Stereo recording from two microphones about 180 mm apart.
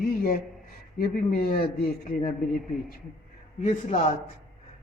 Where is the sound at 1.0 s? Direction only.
55° left (ahead or behind).